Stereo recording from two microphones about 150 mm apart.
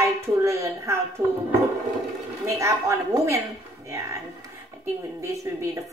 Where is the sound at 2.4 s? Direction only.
20° right (ahead or behind).